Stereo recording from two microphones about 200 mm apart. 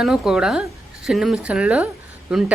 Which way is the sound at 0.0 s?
5° right (ahead or behind).